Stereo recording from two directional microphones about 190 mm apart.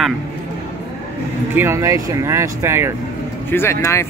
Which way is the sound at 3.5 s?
15° left (ahead or behind).